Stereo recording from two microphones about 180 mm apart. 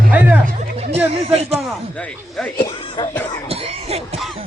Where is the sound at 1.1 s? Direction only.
35° right (ahead or behind).